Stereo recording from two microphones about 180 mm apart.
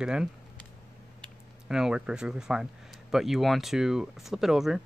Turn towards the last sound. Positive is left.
turn(degrees=0)  # may be behind; listen again after turning